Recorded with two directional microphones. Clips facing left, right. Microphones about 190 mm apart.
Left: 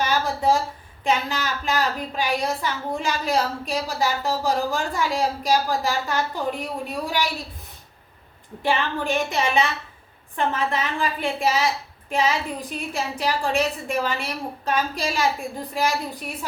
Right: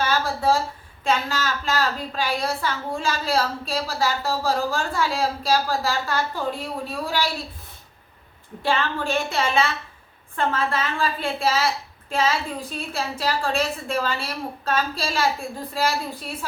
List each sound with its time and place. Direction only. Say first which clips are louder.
0.0 s a sound: even; 15° left (ahead or behind)
1.0 s a woman's voice: even; 15° left (ahead or behind)
8.6 s a woman's voice: even; 15° left (ahead or behind)